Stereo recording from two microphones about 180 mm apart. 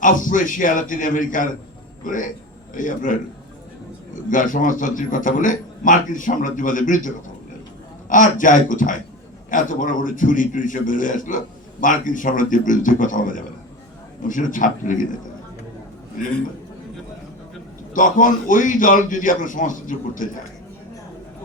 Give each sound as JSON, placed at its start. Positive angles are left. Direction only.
{"t": 0.0, "sound": "a man's voice", "side_deg": 45}
{"t": 8.1, "sound": "a man's voice", "side_deg": 45}
{"t": 17.9, "sound": "a man's voice", "side_deg": 45}